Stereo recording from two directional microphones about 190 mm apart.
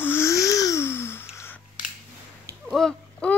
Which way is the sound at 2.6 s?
Centre (ahead or behind).